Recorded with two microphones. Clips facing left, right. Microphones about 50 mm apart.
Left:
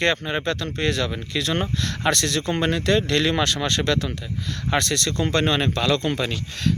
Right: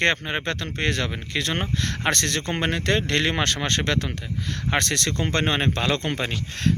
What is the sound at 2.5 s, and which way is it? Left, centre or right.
Speech, right.